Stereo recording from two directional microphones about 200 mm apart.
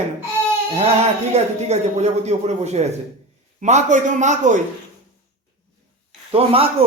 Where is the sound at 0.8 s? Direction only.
35° right (ahead or behind).